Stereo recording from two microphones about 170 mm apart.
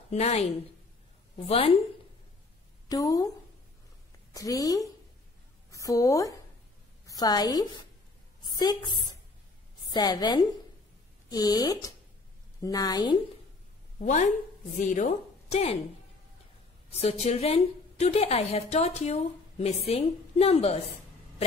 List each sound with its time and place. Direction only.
0.1 s a woman's voice: 40° left (ahead or behind)
2.9 s speech: 20° left (ahead or behind)
4.3 s a woman's voice: 20° left (ahead or behind)
13.9 s a woman's voice: 45° left (ahead or behind)
16.9 s a woman's voice: 40° left (ahead or behind)